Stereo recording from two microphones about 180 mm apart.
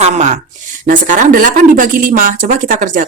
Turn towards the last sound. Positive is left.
turn(degrees=-45)  # may be behind; listen again after turning